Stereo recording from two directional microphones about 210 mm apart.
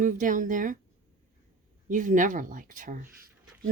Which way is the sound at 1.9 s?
40° right (ahead or behind).